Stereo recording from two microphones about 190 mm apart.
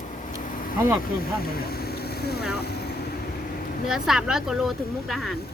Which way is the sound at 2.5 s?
60° left (ahead or behind).